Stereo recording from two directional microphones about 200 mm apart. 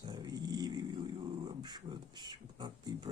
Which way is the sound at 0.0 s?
20° right (ahead or behind).